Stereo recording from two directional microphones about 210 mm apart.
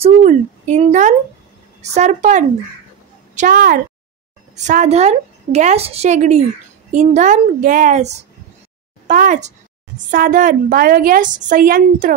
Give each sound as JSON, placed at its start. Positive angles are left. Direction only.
{"t": 0.0, "sound": "a woman's voice", "side_deg": -35}